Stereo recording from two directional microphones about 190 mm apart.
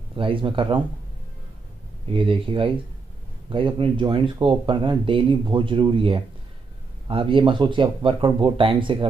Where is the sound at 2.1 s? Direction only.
30° right (ahead or behind).